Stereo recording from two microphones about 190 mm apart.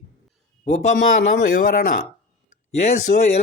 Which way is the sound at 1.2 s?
65° left (ahead or behind).